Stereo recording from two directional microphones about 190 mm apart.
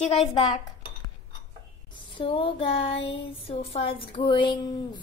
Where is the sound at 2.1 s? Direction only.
30° left (ahead or behind).